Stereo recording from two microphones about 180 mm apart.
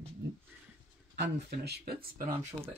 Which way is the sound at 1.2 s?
65° right (ahead or behind).